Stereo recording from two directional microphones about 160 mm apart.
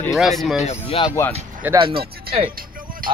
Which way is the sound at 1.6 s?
10° right (ahead or behind).